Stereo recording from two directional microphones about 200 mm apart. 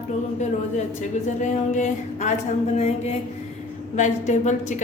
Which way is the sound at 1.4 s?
35° left (ahead or behind).